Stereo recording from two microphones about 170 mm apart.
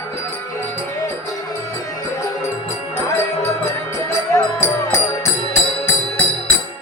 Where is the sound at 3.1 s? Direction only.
15° left (ahead or behind).